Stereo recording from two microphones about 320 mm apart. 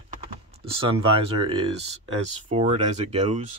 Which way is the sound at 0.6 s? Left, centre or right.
Centre.